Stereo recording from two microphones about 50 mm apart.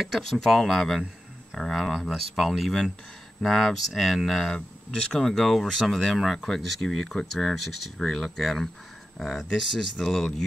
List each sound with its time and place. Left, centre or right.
0.0 s speech: centre
6.1 s speech: centre